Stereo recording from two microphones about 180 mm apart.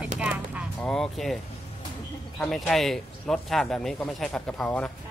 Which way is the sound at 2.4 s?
Centre (ahead or behind).